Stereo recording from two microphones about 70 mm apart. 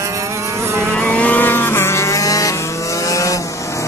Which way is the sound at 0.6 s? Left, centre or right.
Right.